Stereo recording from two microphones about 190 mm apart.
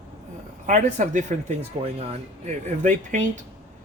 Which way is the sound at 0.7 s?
40° right (ahead or behind).